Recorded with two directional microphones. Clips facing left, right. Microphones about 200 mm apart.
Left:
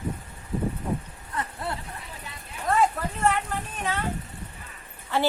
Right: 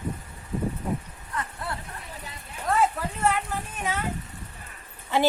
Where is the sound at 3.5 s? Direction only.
10° right (ahead or behind).